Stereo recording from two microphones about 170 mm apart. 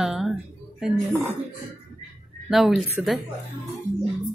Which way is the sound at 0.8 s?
5° right (ahead or behind).